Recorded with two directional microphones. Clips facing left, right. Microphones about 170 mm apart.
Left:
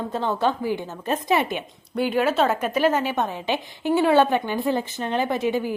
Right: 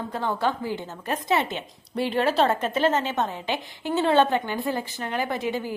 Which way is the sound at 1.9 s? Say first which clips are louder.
Left 2 dB; 5° left (ahead or behind).